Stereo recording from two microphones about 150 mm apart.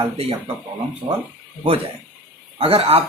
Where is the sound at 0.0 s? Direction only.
40° right (ahead or behind).